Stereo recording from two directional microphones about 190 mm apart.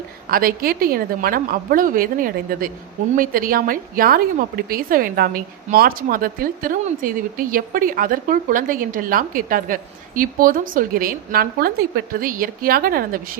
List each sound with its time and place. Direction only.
0.3 s a woman's voice: 50° right (ahead or behind)